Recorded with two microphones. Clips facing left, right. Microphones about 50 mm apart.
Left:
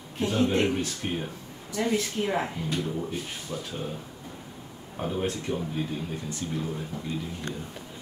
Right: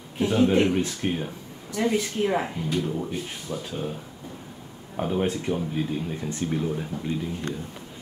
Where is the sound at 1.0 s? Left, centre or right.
Right.